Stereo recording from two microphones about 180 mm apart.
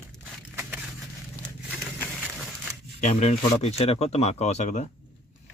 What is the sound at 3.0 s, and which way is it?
Speech, 35° left (ahead or behind).